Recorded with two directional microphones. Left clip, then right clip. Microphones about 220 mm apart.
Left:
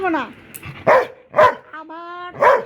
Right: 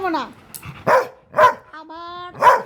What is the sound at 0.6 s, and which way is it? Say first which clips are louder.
Dog: left 2 dB; 30° right (ahead or behind).